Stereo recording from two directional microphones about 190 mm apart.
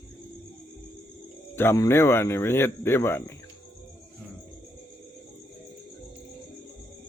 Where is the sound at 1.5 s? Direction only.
15° left (ahead or behind).